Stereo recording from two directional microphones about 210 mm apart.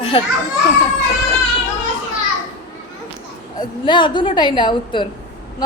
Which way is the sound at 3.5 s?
20° left (ahead or behind).